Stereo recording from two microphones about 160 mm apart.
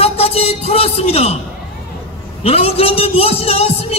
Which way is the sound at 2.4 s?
40° left (ahead or behind).